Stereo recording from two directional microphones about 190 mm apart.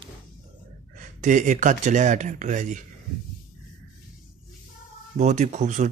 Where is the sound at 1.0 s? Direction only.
40° right (ahead or behind).